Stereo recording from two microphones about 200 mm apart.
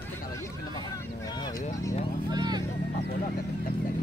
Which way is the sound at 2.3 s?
20° right (ahead or behind).